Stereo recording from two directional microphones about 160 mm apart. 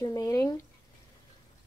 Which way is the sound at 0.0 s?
20° left (ahead or behind).